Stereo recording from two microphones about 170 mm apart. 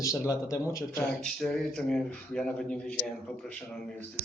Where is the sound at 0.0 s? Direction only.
20° left (ahead or behind).